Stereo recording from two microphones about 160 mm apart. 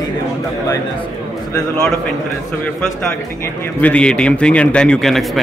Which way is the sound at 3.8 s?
5° left (ahead or behind).